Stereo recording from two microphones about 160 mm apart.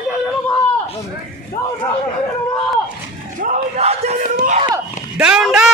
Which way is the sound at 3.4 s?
45° right (ahead or behind).